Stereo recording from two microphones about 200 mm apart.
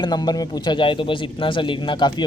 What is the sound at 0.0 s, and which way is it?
A woman's voice, 20° left (ahead or behind).